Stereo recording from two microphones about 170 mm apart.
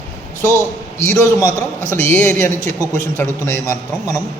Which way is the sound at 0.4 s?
15° left (ahead or behind).